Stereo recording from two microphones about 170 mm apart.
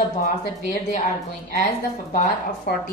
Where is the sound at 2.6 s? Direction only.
60° left (ahead or behind).